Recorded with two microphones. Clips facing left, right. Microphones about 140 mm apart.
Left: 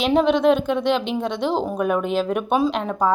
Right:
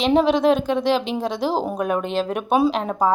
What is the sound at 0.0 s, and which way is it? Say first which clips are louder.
Speech: even; centre (ahead or behind).